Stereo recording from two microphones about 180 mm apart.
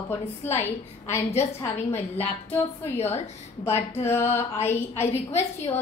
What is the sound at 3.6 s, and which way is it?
A woman's voice, 15° left (ahead or behind).